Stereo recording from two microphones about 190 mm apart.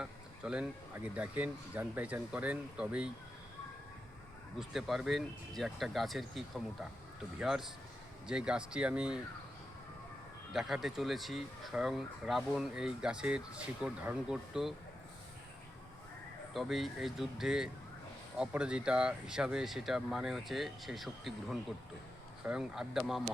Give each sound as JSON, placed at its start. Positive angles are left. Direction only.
{"t": 0.0, "sound": "speech", "side_deg": -5}
{"t": 4.7, "sound": "speech", "side_deg": 0}
{"t": 10.5, "sound": "speech", "side_deg": 0}
{"t": 16.6, "sound": "speech", "side_deg": 0}